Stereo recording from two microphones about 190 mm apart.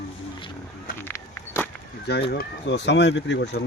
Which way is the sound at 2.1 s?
60° left (ahead or behind).